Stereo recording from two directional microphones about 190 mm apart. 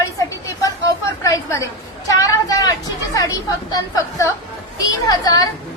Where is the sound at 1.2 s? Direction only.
15° left (ahead or behind).